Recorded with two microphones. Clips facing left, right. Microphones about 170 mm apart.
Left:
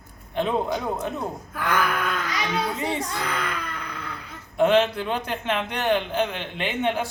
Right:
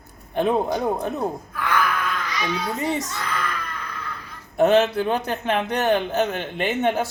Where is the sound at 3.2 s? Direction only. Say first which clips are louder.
Even; 65° left (ahead or behind).